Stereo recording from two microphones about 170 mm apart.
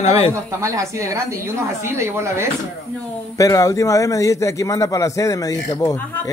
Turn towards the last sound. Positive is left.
turn(degrees=20)  # may be behind; listen again after turning